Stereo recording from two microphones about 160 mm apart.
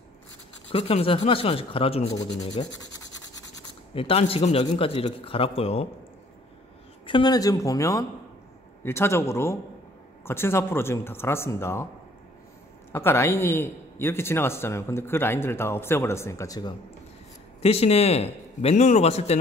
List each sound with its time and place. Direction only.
0.7 s speech: 40° left (ahead or behind)
2.8 s scratch: 20° left (ahead or behind)
3.9 s speech: 35° left (ahead or behind)
7.1 s a man's voice: 30° left (ahead or behind)
12.9 s a man's voice: 15° left (ahead or behind)
17.6 s speech: 40° left (ahead or behind)